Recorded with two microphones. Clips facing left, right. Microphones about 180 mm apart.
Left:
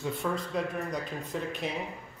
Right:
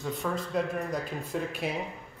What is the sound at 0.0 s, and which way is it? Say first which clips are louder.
Speech: even; centre (ahead or behind).